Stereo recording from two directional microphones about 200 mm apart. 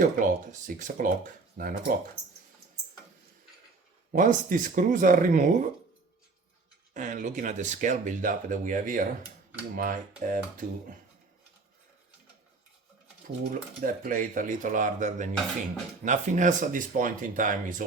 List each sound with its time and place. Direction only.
0.0 s speech: 40° right (ahead or behind)
4.1 s speech: 40° right (ahead or behind)
6.9 s speech: 40° right (ahead or behind)
13.5 s speech: 45° right (ahead or behind)